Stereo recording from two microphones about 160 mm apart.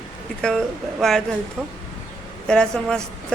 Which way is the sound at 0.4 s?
Centre (ahead or behind).